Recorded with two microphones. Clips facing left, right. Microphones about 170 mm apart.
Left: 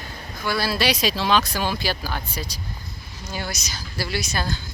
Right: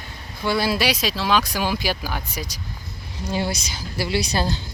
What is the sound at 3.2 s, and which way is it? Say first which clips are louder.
Speech: right 7 dB; 30° right (ahead or behind).